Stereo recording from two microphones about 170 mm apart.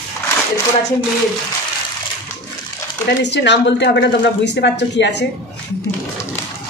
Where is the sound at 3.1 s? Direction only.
90° left.